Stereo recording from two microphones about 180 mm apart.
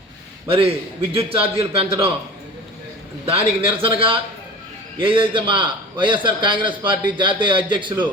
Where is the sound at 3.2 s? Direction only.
30° right (ahead or behind).